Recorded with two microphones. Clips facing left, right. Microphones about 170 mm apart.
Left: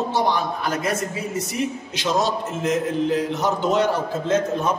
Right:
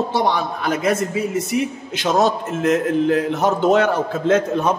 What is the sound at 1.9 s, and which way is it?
A man's voice, 50° right (ahead or behind).